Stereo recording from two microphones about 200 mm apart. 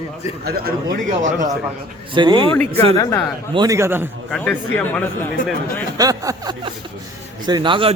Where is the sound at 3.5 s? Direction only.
15° right (ahead or behind).